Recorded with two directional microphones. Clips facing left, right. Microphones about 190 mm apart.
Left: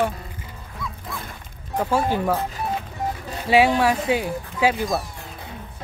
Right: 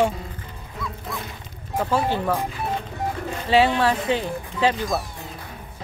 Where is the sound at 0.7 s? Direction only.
Centre (ahead or behind).